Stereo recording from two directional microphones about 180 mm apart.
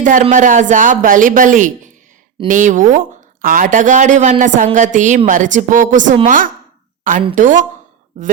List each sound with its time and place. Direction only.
0.0 s a woman's voice: 45° right (ahead or behind)